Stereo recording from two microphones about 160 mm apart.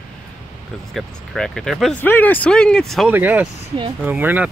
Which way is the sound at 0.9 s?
Centre (ahead or behind).